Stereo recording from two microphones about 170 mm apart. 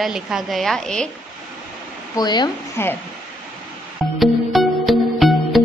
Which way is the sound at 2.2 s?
25° left (ahead or behind).